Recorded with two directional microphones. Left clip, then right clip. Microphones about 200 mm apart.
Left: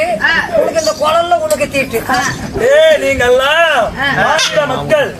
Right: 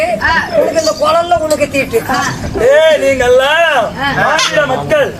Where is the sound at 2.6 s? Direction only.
5° right (ahead or behind).